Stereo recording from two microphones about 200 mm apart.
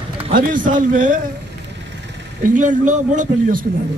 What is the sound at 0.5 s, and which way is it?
Speech, 40° right (ahead or behind).